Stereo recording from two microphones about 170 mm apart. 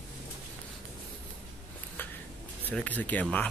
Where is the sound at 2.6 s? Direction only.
10° left (ahead or behind).